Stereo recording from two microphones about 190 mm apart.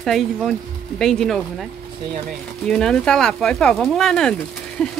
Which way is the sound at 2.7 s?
5° left (ahead or behind).